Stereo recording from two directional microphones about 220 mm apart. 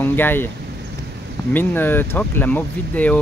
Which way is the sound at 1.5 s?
10° left (ahead or behind).